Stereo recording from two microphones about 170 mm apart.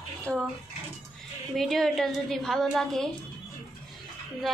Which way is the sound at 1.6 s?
Centre (ahead or behind).